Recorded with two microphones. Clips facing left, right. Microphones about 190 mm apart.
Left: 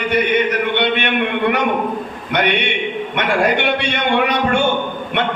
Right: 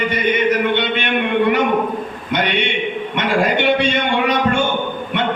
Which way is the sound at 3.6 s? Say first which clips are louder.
Right 2 dB; 65° left (ahead or behind).